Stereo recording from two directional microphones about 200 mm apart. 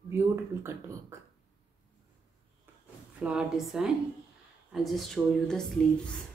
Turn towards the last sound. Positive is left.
turn(degrees=0)  # may be behind; listen again after turning